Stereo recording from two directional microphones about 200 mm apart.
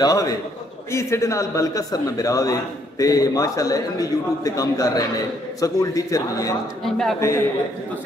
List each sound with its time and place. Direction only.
0.0 s a man's voice: 15° left (ahead or behind)
6.8 s speech: centre (ahead or behind)
7.2 s a man's voice: 15° left (ahead or behind)